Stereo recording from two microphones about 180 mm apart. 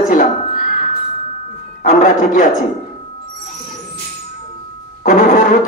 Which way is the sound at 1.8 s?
45° left (ahead or behind).